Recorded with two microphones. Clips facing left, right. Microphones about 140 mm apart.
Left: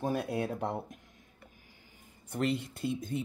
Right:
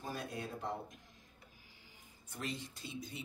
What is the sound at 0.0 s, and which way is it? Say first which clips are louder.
Speech: left 11 dB; 65° left (ahead or behind).